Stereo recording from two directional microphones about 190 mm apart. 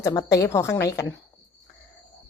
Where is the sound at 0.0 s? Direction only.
15° left (ahead or behind).